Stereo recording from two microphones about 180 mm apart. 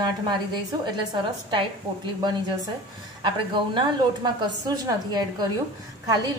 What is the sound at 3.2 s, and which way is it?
A woman's voice, 25° right (ahead or behind).